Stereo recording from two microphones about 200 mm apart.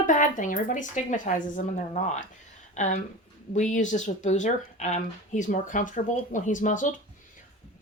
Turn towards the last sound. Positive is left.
turn(degrees=40)  # may be behind; listen again after turning